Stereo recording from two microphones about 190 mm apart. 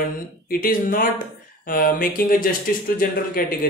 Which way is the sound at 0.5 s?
50° left (ahead or behind).